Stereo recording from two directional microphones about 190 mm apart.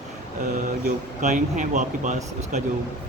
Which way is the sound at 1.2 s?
40° right (ahead or behind).